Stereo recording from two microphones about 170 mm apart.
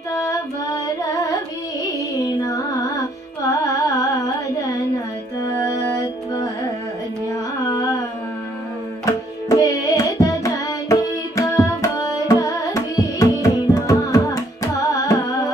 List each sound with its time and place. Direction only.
0.1 s music: 20° left (ahead or behind)
3.6 s carnatic music: 20° left (ahead or behind)
5.4 s music: 20° left (ahead or behind)
7.7 s a sound: 25° left (ahead or behind)
9.0 s music: 20° left (ahead or behind)